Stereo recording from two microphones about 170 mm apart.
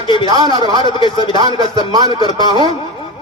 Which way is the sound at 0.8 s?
25° left (ahead or behind).